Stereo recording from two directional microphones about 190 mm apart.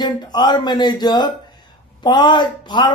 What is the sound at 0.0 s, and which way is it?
Speech, 25° left (ahead or behind).